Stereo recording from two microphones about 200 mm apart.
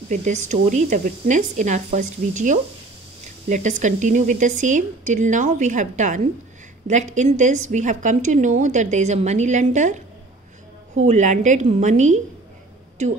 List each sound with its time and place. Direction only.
0.1 s a woman's voice: 35° right (ahead or behind)
11.1 s a woman's voice: 35° right (ahead or behind)